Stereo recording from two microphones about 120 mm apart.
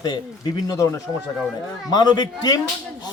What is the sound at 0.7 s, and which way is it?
Speech, 25° left (ahead or behind).